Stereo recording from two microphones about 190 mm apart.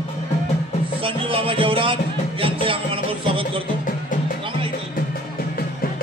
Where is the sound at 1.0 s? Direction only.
30° right (ahead or behind).